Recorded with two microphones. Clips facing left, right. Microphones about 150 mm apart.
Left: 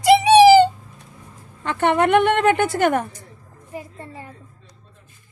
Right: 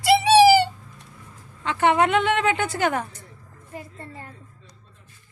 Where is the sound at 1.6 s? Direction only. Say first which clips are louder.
Left 1 dB; 55° left (ahead or behind).